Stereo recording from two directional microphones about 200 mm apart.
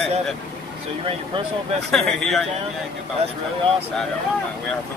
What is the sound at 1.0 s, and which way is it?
Speech, 30° right (ahead or behind).